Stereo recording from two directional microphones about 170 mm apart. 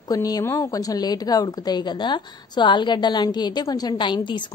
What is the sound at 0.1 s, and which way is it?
A woman's voice, 20° left (ahead or behind).